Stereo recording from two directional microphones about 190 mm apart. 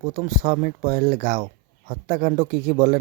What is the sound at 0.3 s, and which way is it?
Speech, 45° right (ahead or behind).